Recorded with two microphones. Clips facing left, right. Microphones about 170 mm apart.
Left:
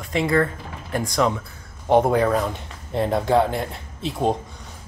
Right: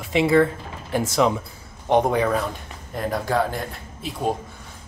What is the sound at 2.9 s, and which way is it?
Speech, 25° left (ahead or behind).